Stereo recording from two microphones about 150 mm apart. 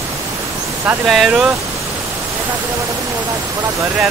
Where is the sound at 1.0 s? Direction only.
Centre (ahead or behind).